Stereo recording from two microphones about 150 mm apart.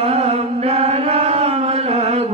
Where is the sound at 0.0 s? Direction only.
45° right (ahead or behind).